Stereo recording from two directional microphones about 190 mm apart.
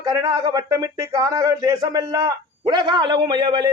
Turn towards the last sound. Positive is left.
turn(degrees=-25)  # may be behind; listen again after turning